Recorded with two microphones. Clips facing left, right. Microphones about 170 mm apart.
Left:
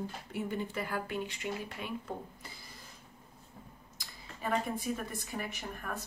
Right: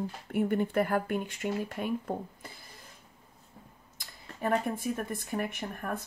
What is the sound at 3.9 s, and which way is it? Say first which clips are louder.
A woman's voice: right 4 dB; 55° right (ahead or behind).